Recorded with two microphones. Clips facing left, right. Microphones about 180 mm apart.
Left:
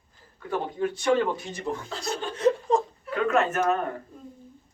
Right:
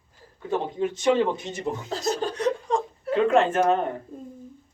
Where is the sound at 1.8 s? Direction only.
40° right (ahead or behind).